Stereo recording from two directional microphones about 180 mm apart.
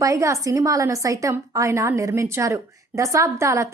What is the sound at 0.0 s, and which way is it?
A woman's voice, 15° right (ahead or behind).